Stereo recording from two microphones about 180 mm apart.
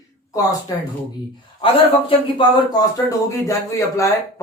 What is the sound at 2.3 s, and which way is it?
A man's voice, 25° left (ahead or behind).